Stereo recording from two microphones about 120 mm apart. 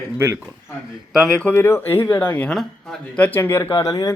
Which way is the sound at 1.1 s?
5° left (ahead or behind).